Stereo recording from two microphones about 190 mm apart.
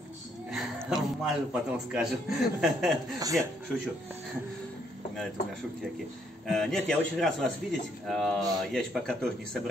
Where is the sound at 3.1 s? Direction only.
20° right (ahead or behind).